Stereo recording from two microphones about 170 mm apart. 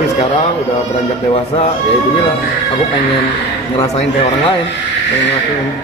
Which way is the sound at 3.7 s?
30° left (ahead or behind).